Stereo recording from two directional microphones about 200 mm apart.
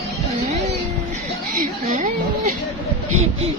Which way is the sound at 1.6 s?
40° right (ahead or behind).